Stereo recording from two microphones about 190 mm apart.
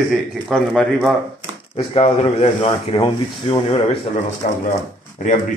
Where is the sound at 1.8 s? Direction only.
30° left (ahead or behind).